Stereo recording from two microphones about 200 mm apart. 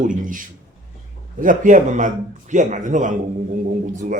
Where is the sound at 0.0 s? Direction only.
40° right (ahead or behind).